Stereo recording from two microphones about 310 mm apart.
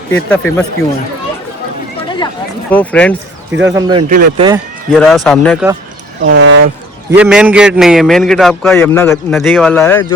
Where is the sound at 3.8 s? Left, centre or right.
Centre.